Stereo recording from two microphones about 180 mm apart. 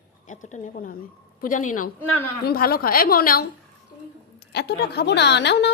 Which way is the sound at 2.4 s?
55° left (ahead or behind).